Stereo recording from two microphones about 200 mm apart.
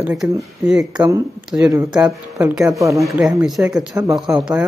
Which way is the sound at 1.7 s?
15° right (ahead or behind).